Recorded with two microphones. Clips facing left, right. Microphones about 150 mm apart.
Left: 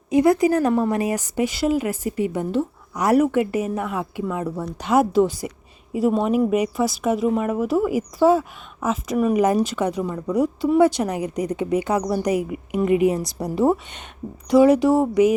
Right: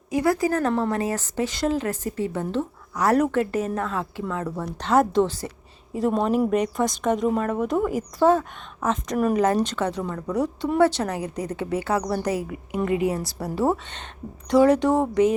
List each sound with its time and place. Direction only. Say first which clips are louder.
0.1 s speech: left 5 dB; 20° left (ahead or behind)